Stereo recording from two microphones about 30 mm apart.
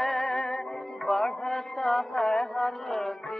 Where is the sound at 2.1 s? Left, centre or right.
Left.